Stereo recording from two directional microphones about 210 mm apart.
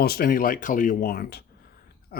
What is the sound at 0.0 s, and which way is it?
Speech, 45° left (ahead or behind).